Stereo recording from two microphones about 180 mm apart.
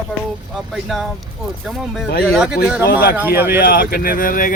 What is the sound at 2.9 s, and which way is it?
Speech, 55° left (ahead or behind).